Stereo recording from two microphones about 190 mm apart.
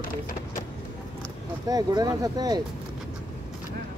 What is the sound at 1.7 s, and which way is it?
Speech, 20° right (ahead or behind).